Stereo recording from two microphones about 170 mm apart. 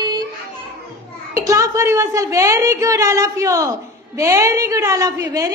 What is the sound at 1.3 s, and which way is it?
A woman's voice, 20° right (ahead or behind).